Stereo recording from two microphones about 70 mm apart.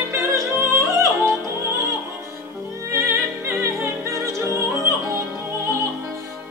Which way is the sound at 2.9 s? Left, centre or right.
Right.